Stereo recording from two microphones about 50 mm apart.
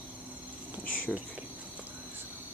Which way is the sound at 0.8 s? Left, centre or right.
Left.